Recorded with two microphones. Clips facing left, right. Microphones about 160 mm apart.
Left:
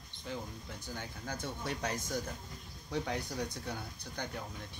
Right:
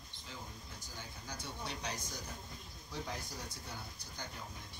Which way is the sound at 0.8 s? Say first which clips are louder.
Left 8 dB; 60° left (ahead or behind).